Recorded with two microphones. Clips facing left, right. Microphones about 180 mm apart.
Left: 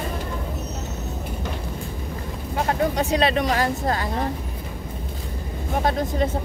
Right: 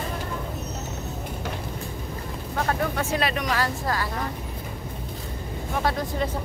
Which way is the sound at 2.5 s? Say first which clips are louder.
Left 4 dB; 20° left (ahead or behind).